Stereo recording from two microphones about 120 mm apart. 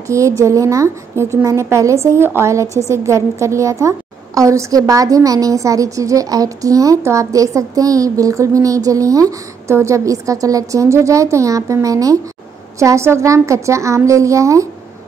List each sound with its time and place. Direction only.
0.1 s a woman's voice: 25° right (ahead or behind)